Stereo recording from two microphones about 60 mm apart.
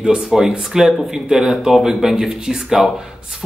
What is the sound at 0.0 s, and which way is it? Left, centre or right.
Speech, centre.